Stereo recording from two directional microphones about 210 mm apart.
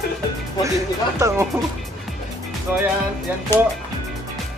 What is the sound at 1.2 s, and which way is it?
Music, 10° right (ahead or behind).